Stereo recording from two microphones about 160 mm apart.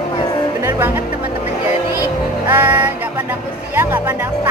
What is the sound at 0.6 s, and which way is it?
Music, 15° right (ahead or behind).